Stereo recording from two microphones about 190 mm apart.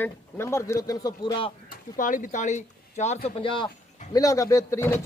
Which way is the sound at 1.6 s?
45° left (ahead or behind).